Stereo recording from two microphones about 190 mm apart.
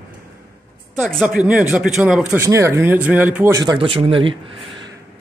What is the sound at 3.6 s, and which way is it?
Speech, 25° right (ahead or behind).